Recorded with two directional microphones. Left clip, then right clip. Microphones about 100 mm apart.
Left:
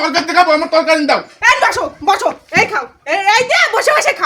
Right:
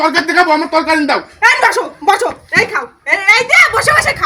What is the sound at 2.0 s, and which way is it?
Speech, 40° right (ahead or behind).